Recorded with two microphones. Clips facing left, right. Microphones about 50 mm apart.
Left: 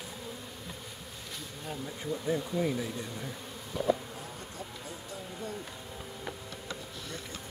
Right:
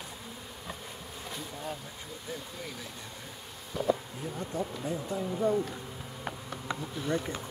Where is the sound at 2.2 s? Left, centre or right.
Left.